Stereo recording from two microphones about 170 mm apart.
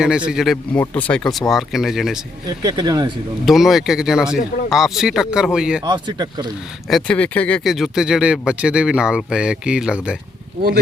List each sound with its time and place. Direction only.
0.0 s speech: 5° right (ahead or behind)
2.5 s speech: 20° right (ahead or behind)
3.4 s speech: centre (ahead or behind)
5.8 s speech: 25° right (ahead or behind)
6.8 s speech: 5° left (ahead or behind)